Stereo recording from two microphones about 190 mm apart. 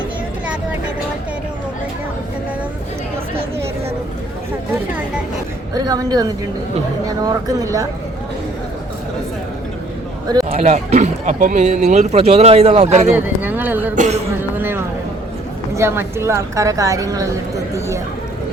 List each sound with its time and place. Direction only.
5.7 s speech: 20° right (ahead or behind)
10.5 s speech: 35° right (ahead or behind)
13.1 s a sound: 10° right (ahead or behind)
13.9 s speech: 40° right (ahead or behind)
14.6 s a sound: 10° right (ahead or behind)
15.7 s a woman's voice: 15° right (ahead or behind)